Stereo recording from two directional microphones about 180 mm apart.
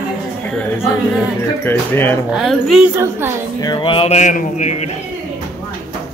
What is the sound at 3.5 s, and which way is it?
Speech, 25° left (ahead or behind).